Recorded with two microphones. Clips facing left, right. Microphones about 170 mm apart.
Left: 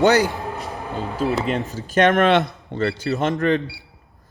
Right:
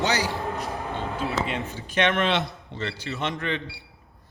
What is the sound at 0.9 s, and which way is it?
Speech, 40° left (ahead or behind).